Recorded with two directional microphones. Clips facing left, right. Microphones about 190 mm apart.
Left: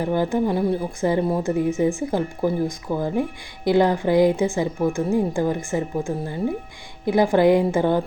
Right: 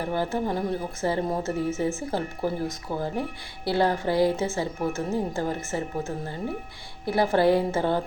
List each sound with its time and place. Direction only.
0.0 s a woman's voice: 15° left (ahead or behind)